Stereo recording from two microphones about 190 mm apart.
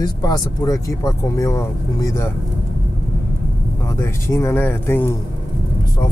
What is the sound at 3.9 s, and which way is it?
Speech, 15° left (ahead or behind).